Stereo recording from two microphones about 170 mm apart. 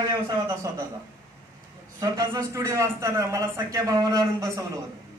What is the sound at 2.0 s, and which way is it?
A man's voice, 20° right (ahead or behind).